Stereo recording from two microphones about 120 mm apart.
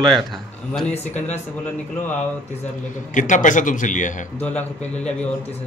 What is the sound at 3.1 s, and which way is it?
A man's voice, 90° left.